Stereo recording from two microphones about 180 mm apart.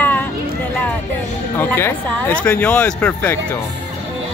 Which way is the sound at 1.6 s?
10° left (ahead or behind).